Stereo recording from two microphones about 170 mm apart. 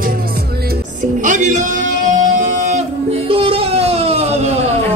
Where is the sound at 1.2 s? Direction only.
50° right (ahead or behind).